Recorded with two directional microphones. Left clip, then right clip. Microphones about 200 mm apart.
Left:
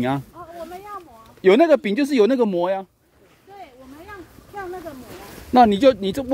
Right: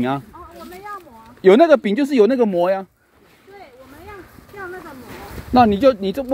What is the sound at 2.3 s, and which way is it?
Speech, 30° left (ahead or behind).